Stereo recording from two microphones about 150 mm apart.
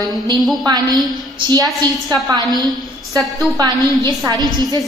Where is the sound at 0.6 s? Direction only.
25° right (ahead or behind).